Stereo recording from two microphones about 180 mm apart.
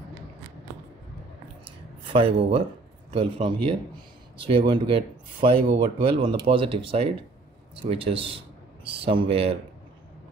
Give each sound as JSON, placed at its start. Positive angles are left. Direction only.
{"t": 2.1, "sound": "a man's voice", "side_deg": -30}